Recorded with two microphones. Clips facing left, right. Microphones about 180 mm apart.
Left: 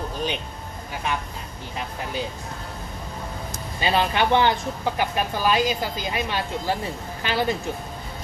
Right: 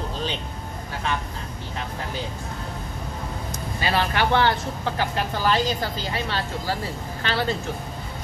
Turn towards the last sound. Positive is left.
turn(degrees=15)  # may be behind; listen again after turning